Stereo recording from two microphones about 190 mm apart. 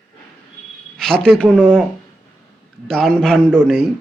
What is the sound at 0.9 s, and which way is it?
Speech, 5° left (ahead or behind).